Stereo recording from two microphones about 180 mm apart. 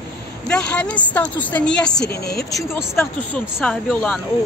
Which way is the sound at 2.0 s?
60° left (ahead or behind).